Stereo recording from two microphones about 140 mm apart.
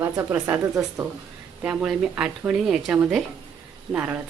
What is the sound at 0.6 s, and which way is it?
Speech, 25° right (ahead or behind).